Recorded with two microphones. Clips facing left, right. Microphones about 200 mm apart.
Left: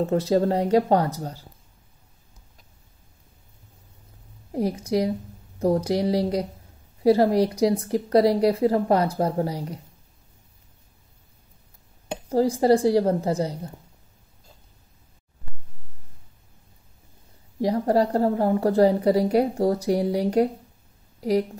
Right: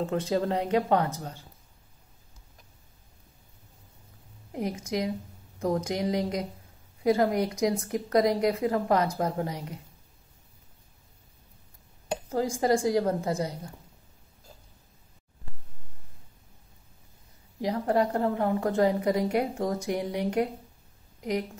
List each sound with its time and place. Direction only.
0.0 s a woman's voice: 35° left (ahead or behind)
4.5 s a woman's voice: 35° left (ahead or behind)
12.3 s a woman's voice: 35° left (ahead or behind)
17.6 s a woman's voice: 35° left (ahead or behind)